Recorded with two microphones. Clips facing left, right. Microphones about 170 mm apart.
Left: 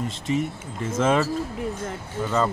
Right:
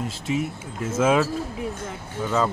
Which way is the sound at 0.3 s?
5° right (ahead or behind).